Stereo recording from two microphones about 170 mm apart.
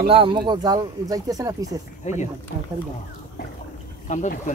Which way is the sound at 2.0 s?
45° left (ahead or behind).